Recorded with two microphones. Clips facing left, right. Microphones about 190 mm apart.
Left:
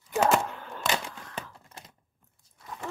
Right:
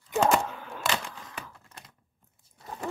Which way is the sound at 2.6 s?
30° right (ahead or behind).